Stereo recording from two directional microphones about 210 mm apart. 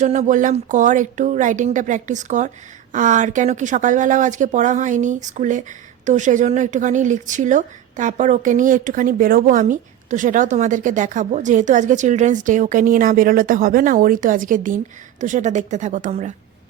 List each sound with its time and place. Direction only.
0.0 s a woman's voice: 35° right (ahead or behind)